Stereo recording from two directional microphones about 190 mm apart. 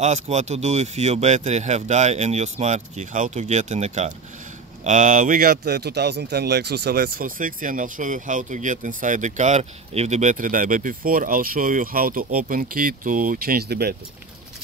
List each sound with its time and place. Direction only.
0.0 s speech: 35° right (ahead or behind); by 13.9 s 55° right (ahead or behind)